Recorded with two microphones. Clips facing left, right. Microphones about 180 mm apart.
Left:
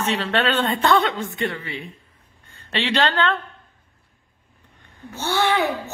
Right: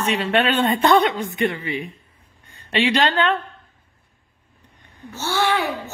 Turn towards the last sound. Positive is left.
turn(degrees=15)  # may be behind; listen again after turning